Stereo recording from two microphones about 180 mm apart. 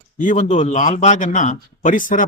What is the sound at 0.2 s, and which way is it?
A man's voice, 45° left (ahead or behind).